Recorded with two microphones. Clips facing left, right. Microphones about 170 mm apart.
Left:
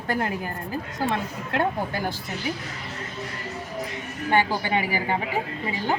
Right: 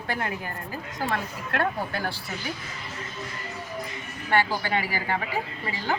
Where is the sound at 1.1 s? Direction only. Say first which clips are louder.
Right 1 dB; 20° left (ahead or behind).